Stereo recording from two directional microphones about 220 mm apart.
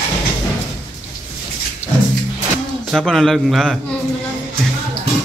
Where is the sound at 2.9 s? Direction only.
Centre (ahead or behind).